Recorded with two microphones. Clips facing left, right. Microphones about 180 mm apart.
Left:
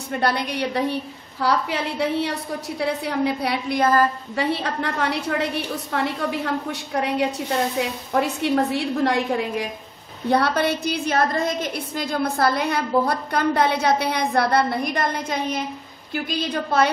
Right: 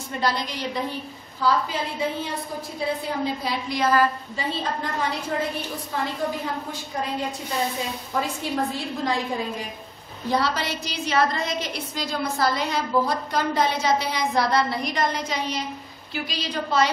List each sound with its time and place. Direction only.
0.1 s a woman's voice: 60° left (ahead or behind)
10.2 s a woman's voice: 60° left (ahead or behind)